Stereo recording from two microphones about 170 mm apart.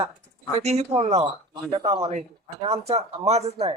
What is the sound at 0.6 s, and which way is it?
Speech, 40° right (ahead or behind).